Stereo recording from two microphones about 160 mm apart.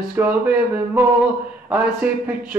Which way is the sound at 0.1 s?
10° right (ahead or behind).